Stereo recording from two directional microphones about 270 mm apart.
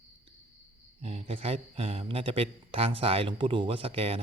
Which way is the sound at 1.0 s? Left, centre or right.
Right.